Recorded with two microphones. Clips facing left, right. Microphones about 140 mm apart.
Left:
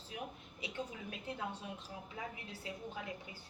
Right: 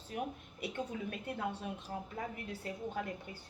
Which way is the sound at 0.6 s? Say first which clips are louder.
Right 6 dB; 55° right (ahead or behind).